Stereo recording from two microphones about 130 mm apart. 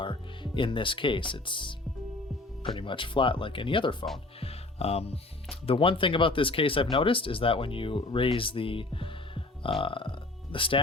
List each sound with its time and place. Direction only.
0.0 s speech: 40° left (ahead or behind)
4.4 s music: 50° left (ahead or behind)
5.6 s speech: 45° left (ahead or behind)
8.4 s music: 45° left (ahead or behind)